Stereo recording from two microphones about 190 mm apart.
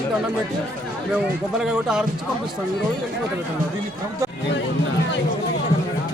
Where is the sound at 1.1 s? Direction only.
5° right (ahead or behind).